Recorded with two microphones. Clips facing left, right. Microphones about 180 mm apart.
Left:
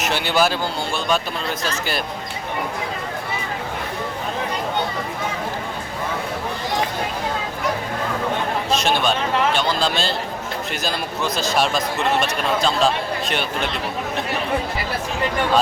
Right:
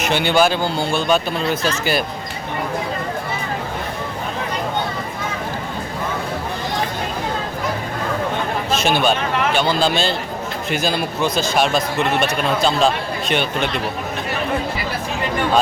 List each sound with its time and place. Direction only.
0.0 s speech: centre (ahead or behind)
8.7 s speech: centre (ahead or behind)